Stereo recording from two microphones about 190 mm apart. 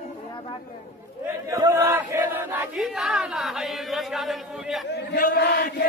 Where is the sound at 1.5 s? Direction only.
15° right (ahead or behind).